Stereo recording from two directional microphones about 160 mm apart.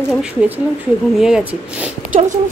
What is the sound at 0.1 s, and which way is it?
A woman's voice, 5° right (ahead or behind).